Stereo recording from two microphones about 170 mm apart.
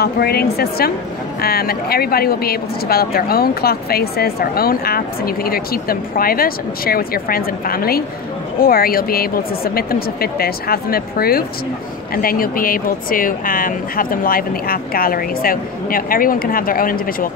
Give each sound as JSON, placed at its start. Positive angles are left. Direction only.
{"t": 0.0, "sound": "speech", "side_deg": 65}